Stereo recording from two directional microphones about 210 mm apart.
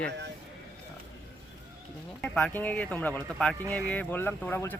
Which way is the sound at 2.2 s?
5° left (ahead or behind).